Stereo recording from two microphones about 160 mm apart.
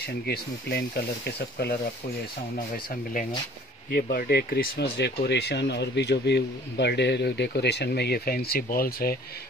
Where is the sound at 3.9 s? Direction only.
75° left (ahead or behind).